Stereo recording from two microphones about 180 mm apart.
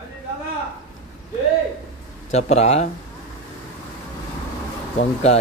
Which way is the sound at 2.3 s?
40° left (ahead or behind).